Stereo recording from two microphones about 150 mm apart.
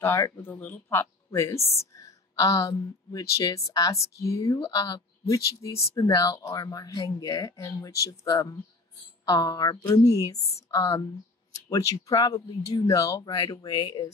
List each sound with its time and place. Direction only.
0.0 s speech: 20° left (ahead or behind)
1.6 s speech: 45° left (ahead or behind)
2.0 s a woman's voice: 25° left (ahead or behind)